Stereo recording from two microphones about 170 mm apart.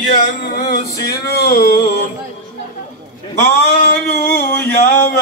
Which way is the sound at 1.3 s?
60° left (ahead or behind).